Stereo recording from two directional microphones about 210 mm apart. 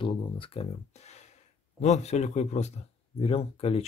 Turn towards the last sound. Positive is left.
turn(degrees=30)  # may be behind; listen again after turning